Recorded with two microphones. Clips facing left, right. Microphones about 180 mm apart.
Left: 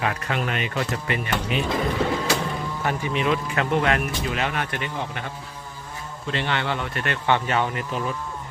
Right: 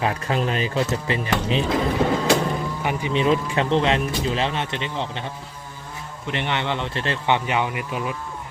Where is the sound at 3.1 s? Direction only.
30° right (ahead or behind).